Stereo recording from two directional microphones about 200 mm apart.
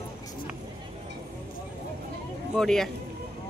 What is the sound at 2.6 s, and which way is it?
Speech, centre (ahead or behind).